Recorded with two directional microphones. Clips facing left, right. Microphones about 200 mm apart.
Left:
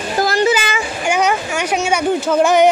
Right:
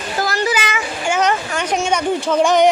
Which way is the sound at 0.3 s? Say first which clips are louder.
Left 5 dB; 30° left (ahead or behind).